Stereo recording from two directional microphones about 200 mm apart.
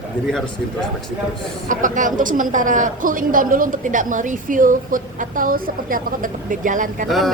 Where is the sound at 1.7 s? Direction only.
40° right (ahead or behind).